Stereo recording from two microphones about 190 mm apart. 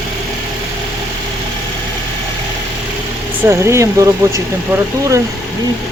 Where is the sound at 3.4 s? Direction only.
15° right (ahead or behind).